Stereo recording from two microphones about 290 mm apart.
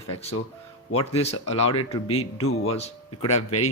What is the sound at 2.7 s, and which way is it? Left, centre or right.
Speech, left.